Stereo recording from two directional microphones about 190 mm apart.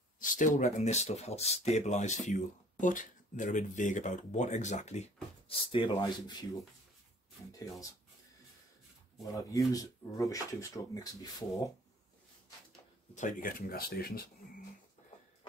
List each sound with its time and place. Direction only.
0.2 s speech: 45° left (ahead or behind); by 6.6 s 25° left (ahead or behind)
9.3 s speech: 20° left (ahead or behind)
13.1 s speech: 45° left (ahead or behind)